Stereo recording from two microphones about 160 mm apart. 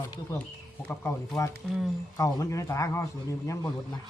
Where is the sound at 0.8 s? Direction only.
10° left (ahead or behind).